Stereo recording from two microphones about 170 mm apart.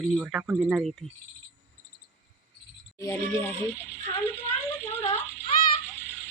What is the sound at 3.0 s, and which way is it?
Speech, 15° left (ahead or behind).